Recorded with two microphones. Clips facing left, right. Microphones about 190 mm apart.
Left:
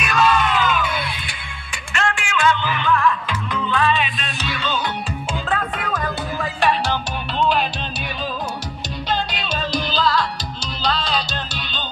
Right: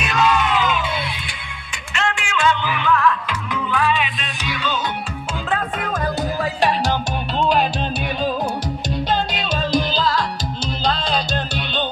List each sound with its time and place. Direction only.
0.0 s music: 20° right (ahead or behind)
2.0 s music: 20° right (ahead or behind)
2.7 s music: 5° right (ahead or behind)
5.9 s music: 40° right (ahead or behind)
9.1 s music: 45° right (ahead or behind)